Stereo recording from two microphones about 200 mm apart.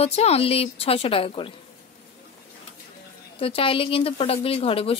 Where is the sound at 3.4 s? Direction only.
25° left (ahead or behind).